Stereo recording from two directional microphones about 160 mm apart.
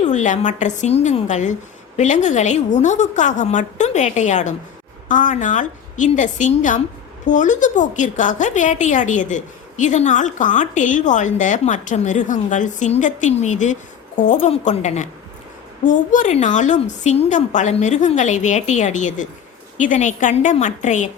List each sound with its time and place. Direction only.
0.0 s a woman's voice: 50° left (ahead or behind)